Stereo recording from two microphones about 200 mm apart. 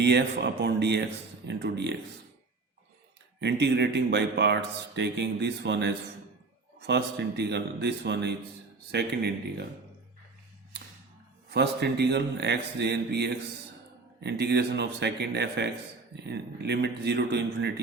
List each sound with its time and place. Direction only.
0.0 s speech: 60° right (ahead or behind)
3.4 s speech: 60° right (ahead or behind)
11.5 s speech: 55° right (ahead or behind)